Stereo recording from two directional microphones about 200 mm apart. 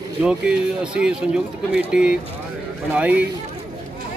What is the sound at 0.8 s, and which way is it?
Speech, 5° right (ahead or behind).